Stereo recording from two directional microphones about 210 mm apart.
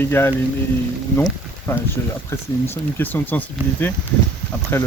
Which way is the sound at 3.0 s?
10° left (ahead or behind).